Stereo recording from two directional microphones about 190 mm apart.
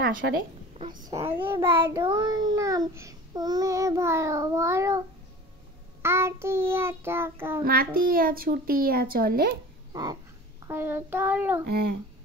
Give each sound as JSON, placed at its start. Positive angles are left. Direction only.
{"t": 0.2, "sound": "speech", "side_deg": -65}
{"t": 1.3, "sound": "a child's voice", "side_deg": -10}
{"t": 6.0, "sound": "a child's voice", "side_deg": -15}
{"t": 7.6, "sound": "a child's voice", "side_deg": -50}
{"t": 10.7, "sound": "a child's voice", "side_deg": -10}
{"t": 11.6, "sound": "speech", "side_deg": -60}